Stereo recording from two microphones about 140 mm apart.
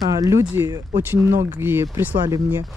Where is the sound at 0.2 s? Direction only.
25° right (ahead or behind).